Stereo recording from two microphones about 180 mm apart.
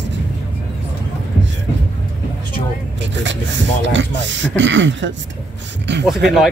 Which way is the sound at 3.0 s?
90° right.